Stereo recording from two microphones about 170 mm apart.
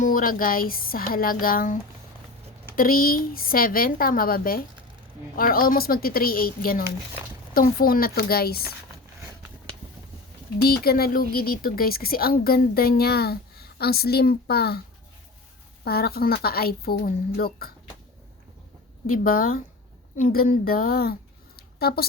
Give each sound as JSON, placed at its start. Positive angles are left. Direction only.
{"t": 0.0, "sound": "a woman's voice", "side_deg": 55}
{"t": 10.6, "sound": "a woman's voice", "side_deg": 65}
{"t": 15.8, "sound": "a woman's voice", "side_deg": 65}
{"t": 19.0, "sound": "a woman's voice", "side_deg": 55}